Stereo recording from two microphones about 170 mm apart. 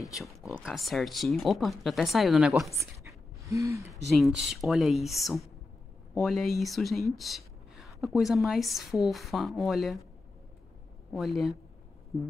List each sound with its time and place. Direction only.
0.0 s speech: centre (ahead or behind)
2.7 s pant: 20° right (ahead or behind)
4.2 s speech: centre (ahead or behind)
11.1 s speech: centre (ahead or behind)